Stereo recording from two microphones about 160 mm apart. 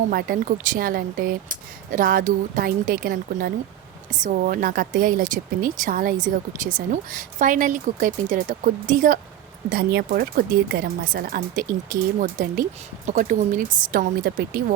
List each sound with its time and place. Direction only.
0.1 s speech: 65° right (ahead or behind)
4.1 s speech: 55° right (ahead or behind)
9.6 s speech: 75° right (ahead or behind)